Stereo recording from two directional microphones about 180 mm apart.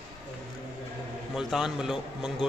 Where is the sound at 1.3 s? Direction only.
Centre (ahead or behind).